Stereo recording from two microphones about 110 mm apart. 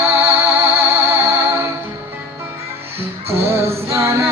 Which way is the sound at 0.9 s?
25° right (ahead or behind).